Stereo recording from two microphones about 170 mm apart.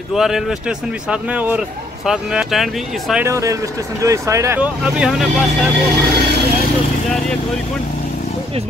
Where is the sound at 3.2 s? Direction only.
20° right (ahead or behind).